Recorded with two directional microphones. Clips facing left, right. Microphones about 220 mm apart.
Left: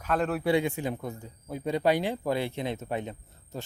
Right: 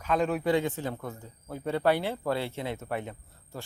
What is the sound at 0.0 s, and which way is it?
Speech, 5° left (ahead or behind).